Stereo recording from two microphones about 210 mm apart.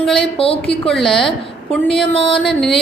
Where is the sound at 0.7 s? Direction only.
Centre (ahead or behind).